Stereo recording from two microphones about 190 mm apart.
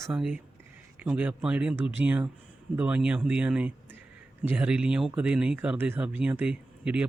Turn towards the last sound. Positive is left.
turn(degrees=-5)  # may be behind; listen again after turning